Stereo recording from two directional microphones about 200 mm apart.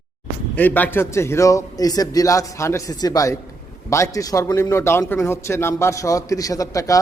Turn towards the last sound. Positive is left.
turn(degrees=15)  # may be behind; listen again after turning